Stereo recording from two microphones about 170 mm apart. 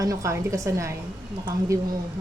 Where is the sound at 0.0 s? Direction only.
20° right (ahead or behind).